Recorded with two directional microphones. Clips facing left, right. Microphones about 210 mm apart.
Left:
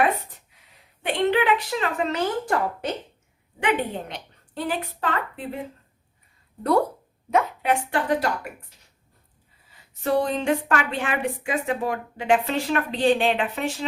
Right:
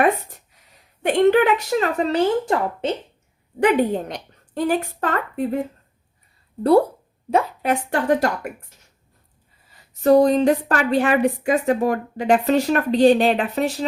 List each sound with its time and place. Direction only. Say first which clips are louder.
1.0 s speech: right 6 dB; 45° right (ahead or behind)
3.6 s speech: right 7 dB; 40° right (ahead or behind)
6.6 s a woman's voice: right 6 dB; 30° right (ahead or behind)
10.0 s a woman's voice: right 9 dB; 40° right (ahead or behind)